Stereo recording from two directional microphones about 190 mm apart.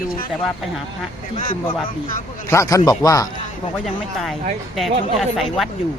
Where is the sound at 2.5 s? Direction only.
15° left (ahead or behind).